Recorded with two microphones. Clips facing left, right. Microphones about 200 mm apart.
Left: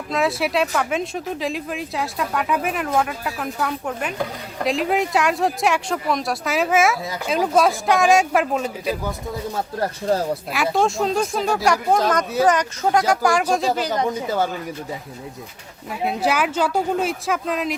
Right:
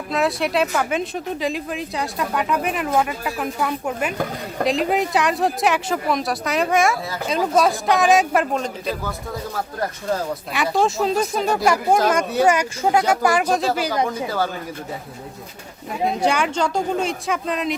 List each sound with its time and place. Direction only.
0.1 s speech: centre (ahead or behind)
9.6 s speech: 30° left (ahead or behind)
10.5 s speech: centre (ahead or behind)
14.1 s speech: 20° left (ahead or behind)
16.0 s speech: 5° left (ahead or behind)